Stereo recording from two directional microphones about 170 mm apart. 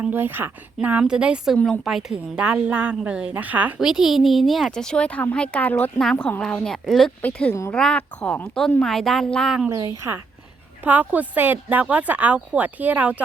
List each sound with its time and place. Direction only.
0.0 s speech: 10° right (ahead or behind)
1.5 s speech: 10° left (ahead or behind)
1.8 s a woman's voice: centre (ahead or behind)
9.6 s speech: 15° right (ahead or behind)